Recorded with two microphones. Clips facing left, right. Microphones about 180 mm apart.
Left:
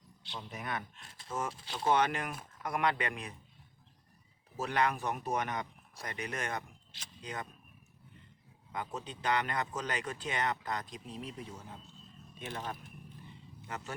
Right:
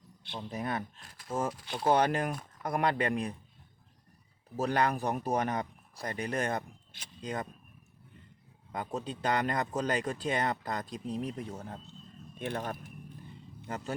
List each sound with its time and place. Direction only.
0.3 s speech: 30° right (ahead or behind)
1.6 s speech: 55° right (ahead or behind)
1.9 s speech: 35° right (ahead or behind)
4.5 s speech: 35° right (ahead or behind)
6.9 s speech: 50° right (ahead or behind)
8.7 s speech: 35° right (ahead or behind); by 12.7 s 55° right (ahead or behind)
13.7 s speech: 35° right (ahead or behind)